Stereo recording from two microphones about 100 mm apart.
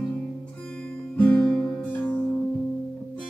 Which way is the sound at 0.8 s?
10° left (ahead or behind).